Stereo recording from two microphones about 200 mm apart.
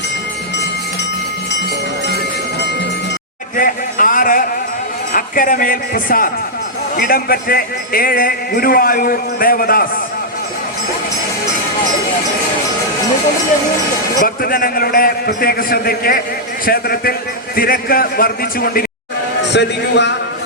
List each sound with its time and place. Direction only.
3.6 s speech: 45° left (ahead or behind)
14.2 s speech: 50° left (ahead or behind)
19.4 s a man's voice: 60° left (ahead or behind)